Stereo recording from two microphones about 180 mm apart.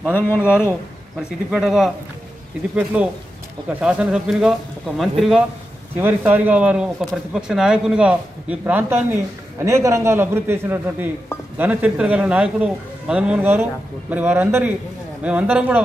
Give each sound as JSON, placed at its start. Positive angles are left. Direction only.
{"t": 0.0, "sound": "speech", "side_deg": 10}
{"t": 1.5, "sound": "speech", "side_deg": 0}